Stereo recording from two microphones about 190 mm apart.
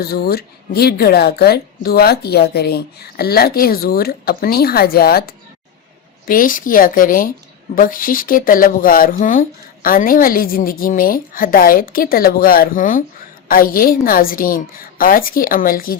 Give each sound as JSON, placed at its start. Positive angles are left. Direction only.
{"t": 0.0, "sound": "speech", "side_deg": 55}